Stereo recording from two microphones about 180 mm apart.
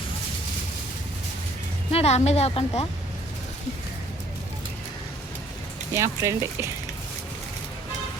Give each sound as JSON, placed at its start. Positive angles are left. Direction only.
{"t": 1.9, "sound": "a woman's voice", "side_deg": 35}
{"t": 5.9, "sound": "speech", "side_deg": -15}